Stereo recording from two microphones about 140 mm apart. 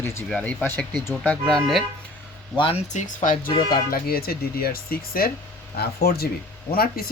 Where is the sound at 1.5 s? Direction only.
Centre (ahead or behind).